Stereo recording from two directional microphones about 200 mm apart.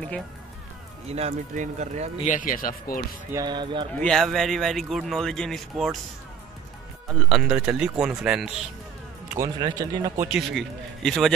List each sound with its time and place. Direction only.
1.0 s speech: 30° right (ahead or behind)
2.2 s speech: 40° left (ahead or behind)
3.3 s speech: 20° right (ahead or behind)
3.9 s speech: 5° left (ahead or behind)
7.1 s speech: centre (ahead or behind)
9.3 s speech: 20° right (ahead or behind)
10.3 s speech: centre (ahead or behind)